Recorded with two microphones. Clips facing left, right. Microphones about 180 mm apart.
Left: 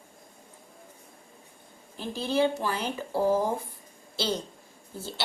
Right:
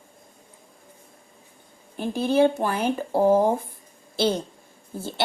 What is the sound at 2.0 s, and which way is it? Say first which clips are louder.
A woman's voice: right 6 dB; 55° right (ahead or behind).